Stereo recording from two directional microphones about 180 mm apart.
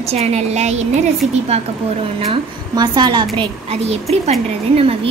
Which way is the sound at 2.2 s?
25° right (ahead or behind).